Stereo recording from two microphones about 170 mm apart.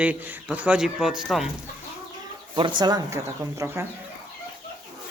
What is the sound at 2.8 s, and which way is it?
Chicken, 20° right (ahead or behind).